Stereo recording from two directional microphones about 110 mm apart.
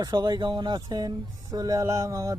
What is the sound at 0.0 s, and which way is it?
Speech, 40° right (ahead or behind).